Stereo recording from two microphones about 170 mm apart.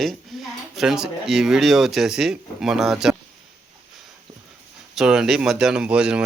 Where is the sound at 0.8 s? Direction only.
5° right (ahead or behind).